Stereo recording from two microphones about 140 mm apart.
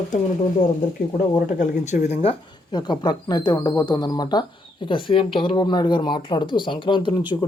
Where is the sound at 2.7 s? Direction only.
30° left (ahead or behind).